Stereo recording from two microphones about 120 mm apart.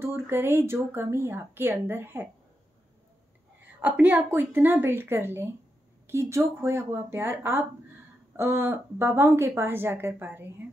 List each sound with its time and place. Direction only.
0.0 s speech: 20° right (ahead or behind)
3.8 s a woman's voice: 15° right (ahead or behind)